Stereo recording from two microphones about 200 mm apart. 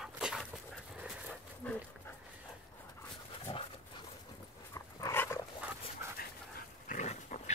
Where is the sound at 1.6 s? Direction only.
5° left (ahead or behind).